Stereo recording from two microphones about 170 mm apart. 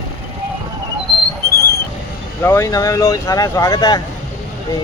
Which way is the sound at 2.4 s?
15° left (ahead or behind).